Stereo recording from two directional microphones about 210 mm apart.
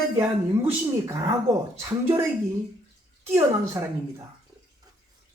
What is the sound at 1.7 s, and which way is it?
Speech, 15° right (ahead or behind).